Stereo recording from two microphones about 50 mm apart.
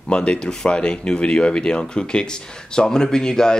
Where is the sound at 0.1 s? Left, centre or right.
Left.